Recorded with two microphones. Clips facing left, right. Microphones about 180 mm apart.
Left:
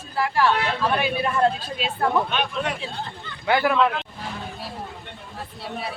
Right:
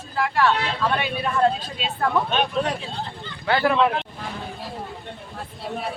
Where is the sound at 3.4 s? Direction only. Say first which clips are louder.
Even; 15° left (ahead or behind).